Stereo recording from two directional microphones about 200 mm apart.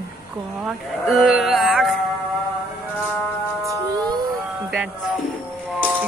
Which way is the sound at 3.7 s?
20° right (ahead or behind).